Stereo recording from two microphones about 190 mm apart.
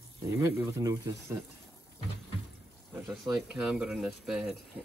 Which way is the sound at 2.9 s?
5° right (ahead or behind).